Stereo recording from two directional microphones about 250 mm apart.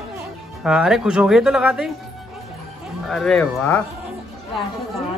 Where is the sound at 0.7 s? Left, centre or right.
Centre.